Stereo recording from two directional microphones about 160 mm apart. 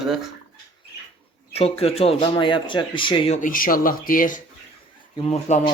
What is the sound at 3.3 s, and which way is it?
Speech, 55° left (ahead or behind).